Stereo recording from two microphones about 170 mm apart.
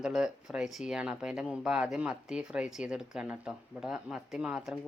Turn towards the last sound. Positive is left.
turn(degrees=-5)  # may be behind; listen again after turning